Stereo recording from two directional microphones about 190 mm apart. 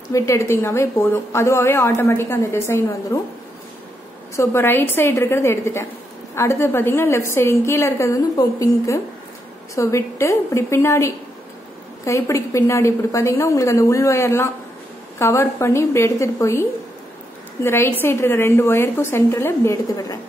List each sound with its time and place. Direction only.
0.1 s a woman's voice: 15° left (ahead or behind)
4.4 s a woman's voice: 10° left (ahead or behind)
17.6 s a woman's voice: 10° left (ahead or behind)